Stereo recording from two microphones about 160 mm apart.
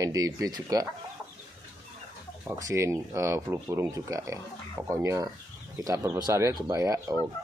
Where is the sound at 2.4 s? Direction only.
20° right (ahead or behind).